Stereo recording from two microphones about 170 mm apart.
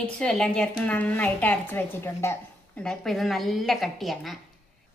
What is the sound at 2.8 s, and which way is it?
A woman's voice, 5° left (ahead or behind).